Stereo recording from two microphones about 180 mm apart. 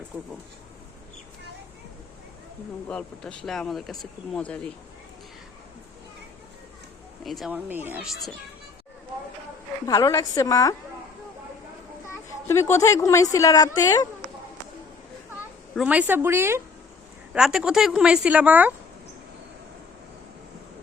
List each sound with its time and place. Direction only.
2.9 s speech: 5° left (ahead or behind)
7.3 s speech: centre (ahead or behind)
9.8 s a woman's voice: 20° left (ahead or behind)
12.0 s a woman's voice: 15° left (ahead or behind)
15.7 s a woman's voice: 5° right (ahead or behind)